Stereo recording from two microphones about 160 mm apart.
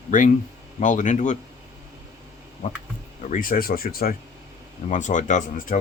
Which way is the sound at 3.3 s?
60° left (ahead or behind).